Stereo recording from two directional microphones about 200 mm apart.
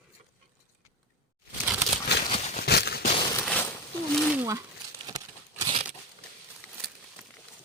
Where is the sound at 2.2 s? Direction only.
30° left (ahead or behind).